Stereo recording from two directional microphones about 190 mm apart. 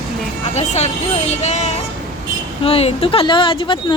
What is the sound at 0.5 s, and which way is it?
Speech, 35° left (ahead or behind).